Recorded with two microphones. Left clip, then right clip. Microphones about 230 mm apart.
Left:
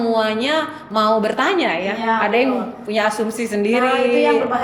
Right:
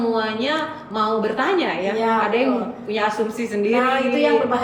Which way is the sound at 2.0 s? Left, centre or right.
Centre.